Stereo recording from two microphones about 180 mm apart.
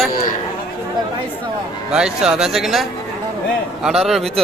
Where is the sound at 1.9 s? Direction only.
5° right (ahead or behind).